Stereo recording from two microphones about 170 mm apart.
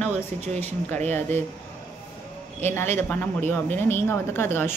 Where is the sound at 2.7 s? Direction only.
15° left (ahead or behind).